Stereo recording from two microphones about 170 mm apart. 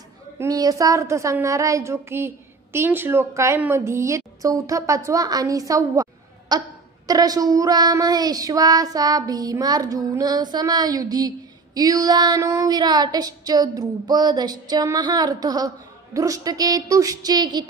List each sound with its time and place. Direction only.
0.4 s speech: 20° right (ahead or behind)
6.5 s a sound: 25° right (ahead or behind)
7.1 s child singing: 20° right (ahead or behind)